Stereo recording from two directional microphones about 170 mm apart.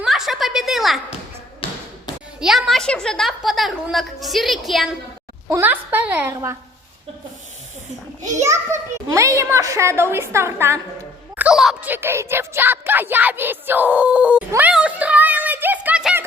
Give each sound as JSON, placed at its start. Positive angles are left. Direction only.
{"t": 0.0, "sound": "a sound", "side_deg": 0}
{"t": 2.4, "sound": "a woman's voice", "side_deg": 0}
{"t": 5.5, "sound": "a child's voice", "side_deg": -15}
{"t": 8.4, "sound": "a child's voice", "side_deg": -20}
{"t": 11.3, "sound": "speech", "side_deg": -5}